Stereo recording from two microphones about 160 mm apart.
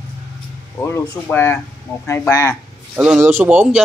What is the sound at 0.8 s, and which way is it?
Speech, 15° left (ahead or behind).